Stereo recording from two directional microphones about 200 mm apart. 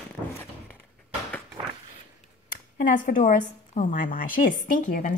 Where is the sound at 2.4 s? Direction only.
40° left (ahead or behind).